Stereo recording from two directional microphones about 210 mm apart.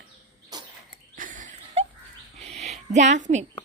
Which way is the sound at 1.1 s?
40° right (ahead or behind).